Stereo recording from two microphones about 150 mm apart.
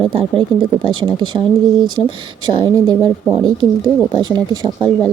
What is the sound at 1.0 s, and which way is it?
Speech, 35° right (ahead or behind).